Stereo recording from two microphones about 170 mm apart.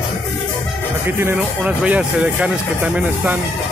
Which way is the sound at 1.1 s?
15° right (ahead or behind).